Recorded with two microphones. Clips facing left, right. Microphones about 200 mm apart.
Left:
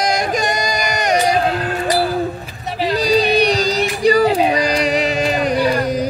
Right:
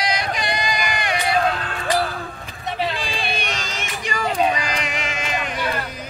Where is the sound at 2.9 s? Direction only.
40° left (ahead or behind).